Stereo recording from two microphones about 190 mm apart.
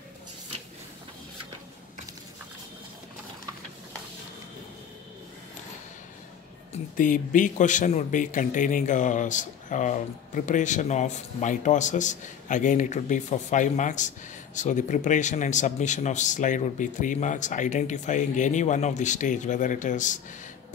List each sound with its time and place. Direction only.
6.7 s speech: 45° left (ahead or behind)